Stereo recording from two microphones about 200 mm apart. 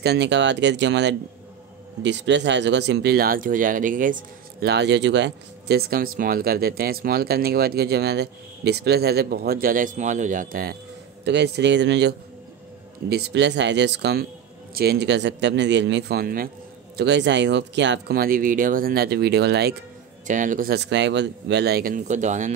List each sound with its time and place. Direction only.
0.0 s speech: 55° right (ahead or behind)
11.2 s speech: 60° right (ahead or behind)
16.9 s speech: 60° right (ahead or behind)
20.2 s speech: 40° right (ahead or behind)